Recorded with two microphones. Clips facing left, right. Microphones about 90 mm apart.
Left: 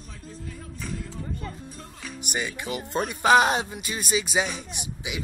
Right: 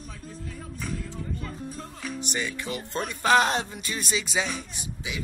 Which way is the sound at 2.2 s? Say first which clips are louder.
Left 2 dB; 10° left (ahead or behind).